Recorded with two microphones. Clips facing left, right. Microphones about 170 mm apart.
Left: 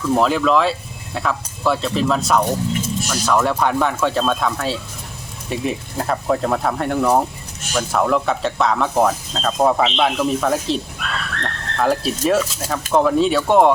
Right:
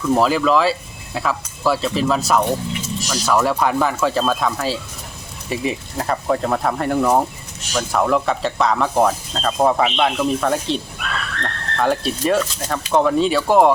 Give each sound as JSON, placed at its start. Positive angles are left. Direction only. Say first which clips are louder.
{"t": 0.1, "sound": "speech", "louder": "even", "side_deg": 0}
{"t": 2.7, "sound": "a sound", "louder": "left 3 dB", "side_deg": 50}
{"t": 3.1, "sound": "speech", "louder": "right 1 dB", "side_deg": 0}